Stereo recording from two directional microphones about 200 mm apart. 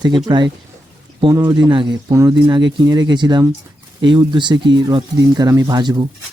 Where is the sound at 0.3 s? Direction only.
20° right (ahead or behind).